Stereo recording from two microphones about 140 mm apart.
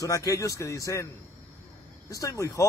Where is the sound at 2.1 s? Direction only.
20° left (ahead or behind).